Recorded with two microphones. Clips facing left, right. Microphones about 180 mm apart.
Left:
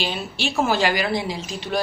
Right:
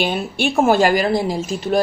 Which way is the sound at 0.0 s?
55° right (ahead or behind).